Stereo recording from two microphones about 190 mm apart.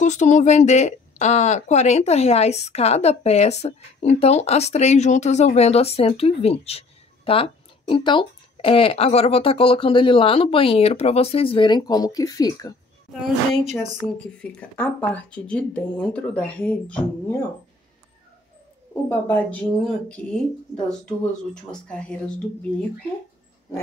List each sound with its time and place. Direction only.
0.0 s speech: 40° left (ahead or behind); by 12.7 s 20° left (ahead or behind)
13.2 s a woman's voice: centre (ahead or behind)
19.0 s a woman's voice: 10° left (ahead or behind)
21.6 s speech: 5° left (ahead or behind)